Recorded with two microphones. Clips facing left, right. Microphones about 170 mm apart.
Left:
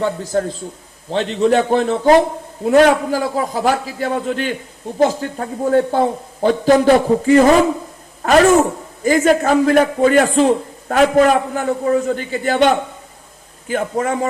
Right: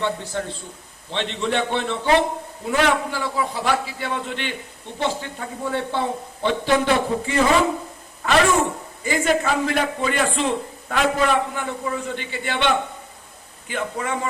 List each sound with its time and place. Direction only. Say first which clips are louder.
0.0 s a woman's voice: left 7 dB; 40° left (ahead or behind)